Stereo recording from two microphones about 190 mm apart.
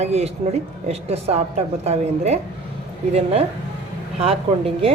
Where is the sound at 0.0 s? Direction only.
35° right (ahead or behind).